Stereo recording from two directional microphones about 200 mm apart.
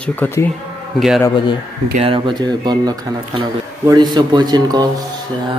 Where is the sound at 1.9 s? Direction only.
25° right (ahead or behind).